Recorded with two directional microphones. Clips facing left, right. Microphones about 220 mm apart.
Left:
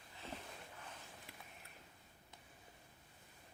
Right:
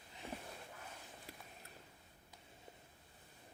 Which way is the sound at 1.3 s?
35° right (ahead or behind).